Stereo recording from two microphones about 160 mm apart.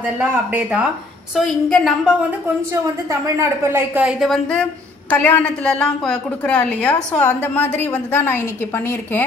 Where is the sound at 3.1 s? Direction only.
15° right (ahead or behind).